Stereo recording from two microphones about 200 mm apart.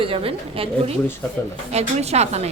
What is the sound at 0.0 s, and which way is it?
A woman's voice, 25° right (ahead or behind).